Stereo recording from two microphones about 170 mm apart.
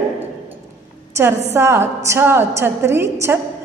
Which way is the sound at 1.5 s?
15° right (ahead or behind).